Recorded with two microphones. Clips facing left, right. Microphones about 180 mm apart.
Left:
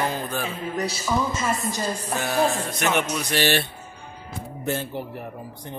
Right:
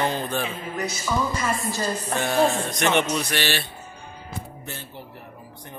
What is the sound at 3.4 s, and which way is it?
Speech, 50° left (ahead or behind).